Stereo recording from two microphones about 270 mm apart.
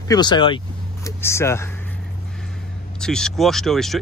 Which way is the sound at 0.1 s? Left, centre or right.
Centre.